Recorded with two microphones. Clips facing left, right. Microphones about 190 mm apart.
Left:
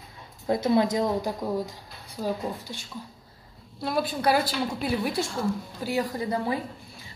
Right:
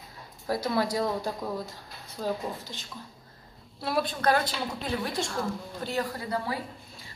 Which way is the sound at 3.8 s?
Centre (ahead or behind).